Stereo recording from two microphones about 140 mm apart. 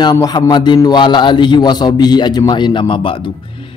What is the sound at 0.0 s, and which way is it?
A man's voice, 30° left (ahead or behind).